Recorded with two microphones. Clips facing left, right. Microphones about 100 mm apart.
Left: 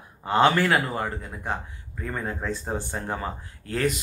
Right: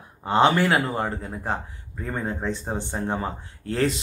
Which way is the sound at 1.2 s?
30° right (ahead or behind).